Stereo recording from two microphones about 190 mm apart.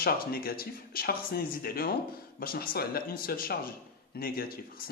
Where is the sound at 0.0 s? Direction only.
50° left (ahead or behind).